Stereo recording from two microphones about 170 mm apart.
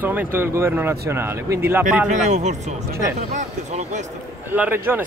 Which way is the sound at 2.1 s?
45° right (ahead or behind).